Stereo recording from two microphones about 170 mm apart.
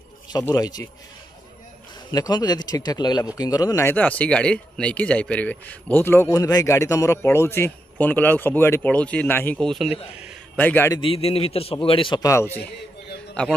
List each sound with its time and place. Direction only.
0.3 s speech: 20° left (ahead or behind)
2.0 s speech: 25° left (ahead or behind); by 9.9 s centre (ahead or behind)
10.1 s a sound: 5° right (ahead or behind)
10.6 s speech: 10° left (ahead or behind)
11.0 s a man's voice: 35° left (ahead or behind)
12.3 s speech: 15° left (ahead or behind)